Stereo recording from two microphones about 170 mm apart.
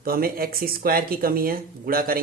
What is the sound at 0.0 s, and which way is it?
Speech, 60° right (ahead or behind).